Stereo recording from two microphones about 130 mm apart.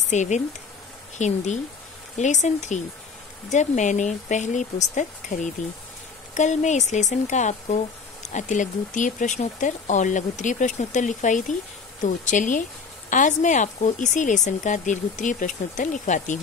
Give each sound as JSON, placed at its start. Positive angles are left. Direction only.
{"t": 0.1, "sound": "a woman's voice", "side_deg": 65}